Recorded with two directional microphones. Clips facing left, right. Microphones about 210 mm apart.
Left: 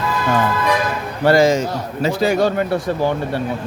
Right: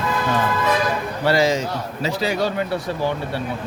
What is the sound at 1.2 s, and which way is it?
Speech, 50° left (ahead or behind).